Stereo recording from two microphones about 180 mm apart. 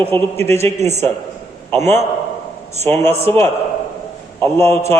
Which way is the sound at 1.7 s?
15° left (ahead or behind).